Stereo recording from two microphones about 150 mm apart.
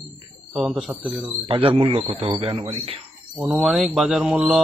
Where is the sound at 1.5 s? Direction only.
40° right (ahead or behind).